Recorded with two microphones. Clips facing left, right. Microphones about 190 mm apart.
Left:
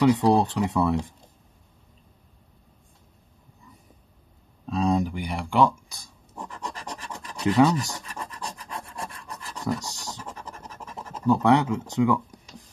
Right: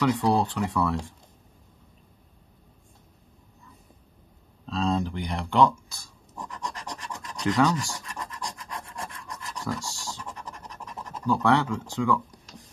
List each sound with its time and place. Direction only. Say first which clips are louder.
0.0 s speech: left 4 dB; 20° left (ahead or behind)
4.6 s speech: left 3 dB; 15° left (ahead or behind)
7.5 s speech: left 4 dB; 25° left (ahead or behind)
8.2 s rub: even; 30° left (ahead or behind)
9.8 s scratch: even; 20° left (ahead or behind)
11.1 s speech: left 3 dB; 20° left (ahead or behind)